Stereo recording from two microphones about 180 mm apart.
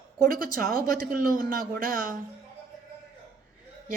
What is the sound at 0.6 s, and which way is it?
A woman's voice, 55° right (ahead or behind).